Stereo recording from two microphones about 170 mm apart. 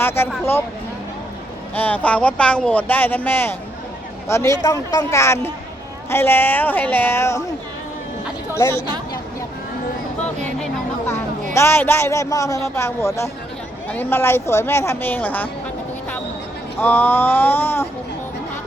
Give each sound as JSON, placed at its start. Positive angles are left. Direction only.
{"t": 0.0, "sound": "speech", "side_deg": 15}
{"t": 1.7, "sound": "speech", "side_deg": 10}
{"t": 8.5, "sound": "speech", "side_deg": 15}
{"t": 10.2, "sound": "music", "side_deg": 10}
{"t": 11.5, "sound": "speech", "side_deg": 15}
{"t": 16.7, "sound": "speech", "side_deg": 10}